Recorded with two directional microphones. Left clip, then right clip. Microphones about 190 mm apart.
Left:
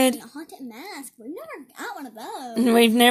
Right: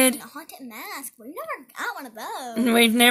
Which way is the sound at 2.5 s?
10° right (ahead or behind).